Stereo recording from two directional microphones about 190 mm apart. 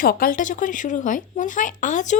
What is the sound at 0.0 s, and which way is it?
Speech, 50° left (ahead or behind).